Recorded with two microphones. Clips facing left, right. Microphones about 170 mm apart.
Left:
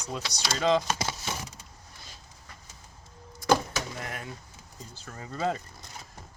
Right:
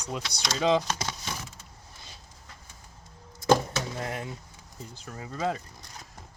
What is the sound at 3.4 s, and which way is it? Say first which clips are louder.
Door: right 2 dB; 25° right (ahead or behind).